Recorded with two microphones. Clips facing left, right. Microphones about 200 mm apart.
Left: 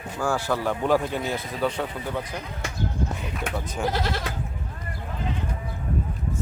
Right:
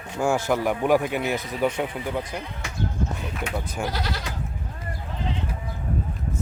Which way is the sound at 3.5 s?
10° right (ahead or behind).